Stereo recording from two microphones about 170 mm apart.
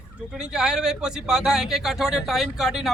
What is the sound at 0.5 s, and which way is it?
Speech, 5° right (ahead or behind).